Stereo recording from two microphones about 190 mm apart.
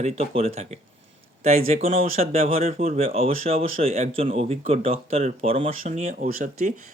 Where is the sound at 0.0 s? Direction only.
30° right (ahead or behind).